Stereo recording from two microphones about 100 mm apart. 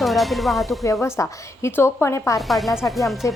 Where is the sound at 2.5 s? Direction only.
Centre (ahead or behind).